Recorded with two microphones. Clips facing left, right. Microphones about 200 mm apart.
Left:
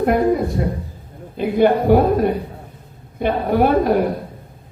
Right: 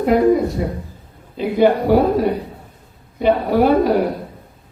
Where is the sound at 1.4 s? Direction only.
55° left (ahead or behind).